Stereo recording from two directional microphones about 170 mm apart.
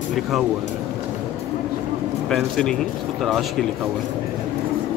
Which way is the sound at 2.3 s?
5° left (ahead or behind).